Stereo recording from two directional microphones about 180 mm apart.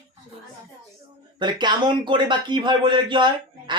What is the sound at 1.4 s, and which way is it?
Speech, 25° right (ahead or behind).